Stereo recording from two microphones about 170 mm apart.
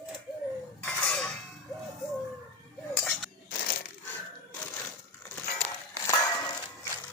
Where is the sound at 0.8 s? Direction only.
5° left (ahead or behind).